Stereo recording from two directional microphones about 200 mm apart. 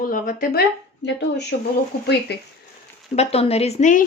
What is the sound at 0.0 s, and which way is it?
Speech, 45° left (ahead or behind).